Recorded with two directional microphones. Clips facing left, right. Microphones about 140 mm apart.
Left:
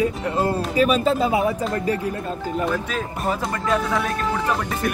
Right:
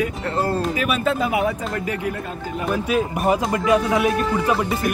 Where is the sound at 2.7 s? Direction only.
15° right (ahead or behind).